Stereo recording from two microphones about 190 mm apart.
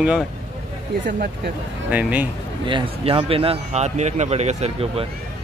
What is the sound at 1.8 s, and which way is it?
Speech, 10° right (ahead or behind).